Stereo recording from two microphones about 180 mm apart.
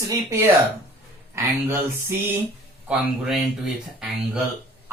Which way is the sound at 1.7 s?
10° right (ahead or behind).